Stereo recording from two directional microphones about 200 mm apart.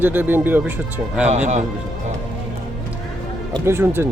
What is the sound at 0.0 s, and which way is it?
Speech, 10° right (ahead or behind).